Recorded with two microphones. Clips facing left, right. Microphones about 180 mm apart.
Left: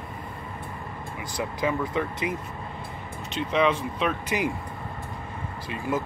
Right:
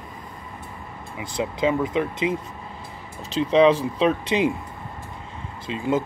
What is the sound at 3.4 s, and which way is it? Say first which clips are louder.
Speech: right 7 dB; 30° right (ahead or behind).